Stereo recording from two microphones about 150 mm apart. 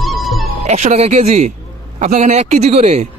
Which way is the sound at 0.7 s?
50° right (ahead or behind).